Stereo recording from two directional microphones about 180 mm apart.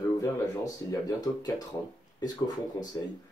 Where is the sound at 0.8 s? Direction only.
20° left (ahead or behind).